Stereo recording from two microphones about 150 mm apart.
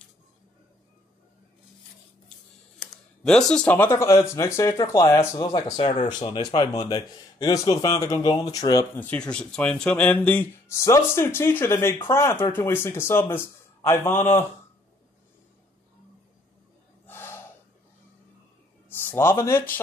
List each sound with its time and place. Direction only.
2.8 s speech: 5° left (ahead or behind); by 8.8 s 25° left (ahead or behind)
8.9 s speech: 10° left (ahead or behind)
17.0 s gasp: 15° left (ahead or behind)
18.9 s a man's voice: 15° left (ahead or behind)